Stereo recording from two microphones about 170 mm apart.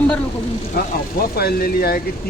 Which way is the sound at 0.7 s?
60° left (ahead or behind).